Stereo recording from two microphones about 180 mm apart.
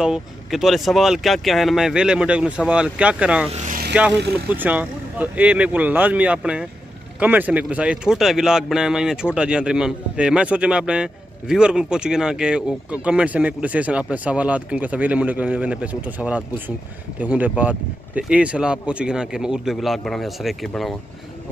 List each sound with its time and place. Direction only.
0.0 s speech: 5° right (ahead or behind)
3.6 s vehicle: 50° right (ahead or behind)
4.5 s speech: 10° right (ahead or behind)